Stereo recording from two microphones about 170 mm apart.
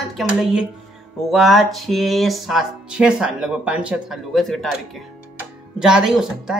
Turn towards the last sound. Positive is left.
turn(degrees=-5)  # may be behind; listen again after turning